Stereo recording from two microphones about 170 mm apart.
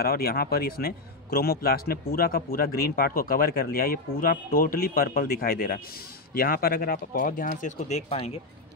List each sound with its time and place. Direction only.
0.0 s a man's voice: 65° left (ahead or behind)
7.6 s speech: 45° left (ahead or behind)